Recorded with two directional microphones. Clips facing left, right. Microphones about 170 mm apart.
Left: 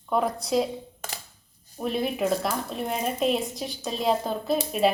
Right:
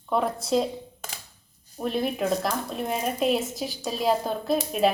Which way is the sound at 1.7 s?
Centre (ahead or behind).